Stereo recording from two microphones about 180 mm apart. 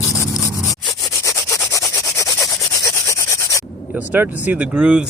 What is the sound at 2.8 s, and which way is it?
Rub, 15° left (ahead or behind).